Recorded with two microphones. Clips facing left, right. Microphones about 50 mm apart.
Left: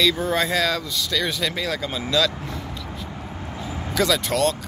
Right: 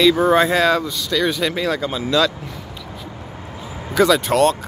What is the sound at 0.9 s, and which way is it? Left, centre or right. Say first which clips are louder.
Speech: right 5 dB; centre.